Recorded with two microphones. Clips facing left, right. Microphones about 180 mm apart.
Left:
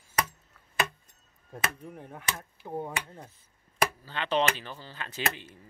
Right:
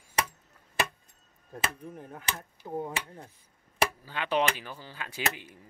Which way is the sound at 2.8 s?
10° right (ahead or behind).